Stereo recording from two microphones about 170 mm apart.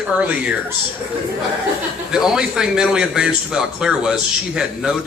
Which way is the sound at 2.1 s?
5° right (ahead or behind).